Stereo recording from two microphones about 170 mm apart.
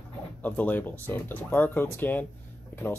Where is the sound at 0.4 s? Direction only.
10° left (ahead or behind).